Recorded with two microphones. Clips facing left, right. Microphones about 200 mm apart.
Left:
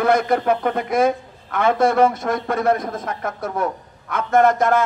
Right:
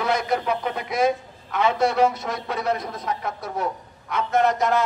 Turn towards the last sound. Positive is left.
turn(degrees=50)  # may be behind; listen again after turning